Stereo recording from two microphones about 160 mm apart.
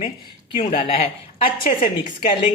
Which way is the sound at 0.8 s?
40° left (ahead or behind).